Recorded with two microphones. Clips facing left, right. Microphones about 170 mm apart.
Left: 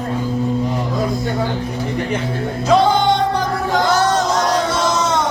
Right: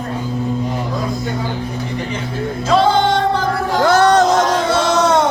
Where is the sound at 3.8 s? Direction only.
65° right (ahead or behind).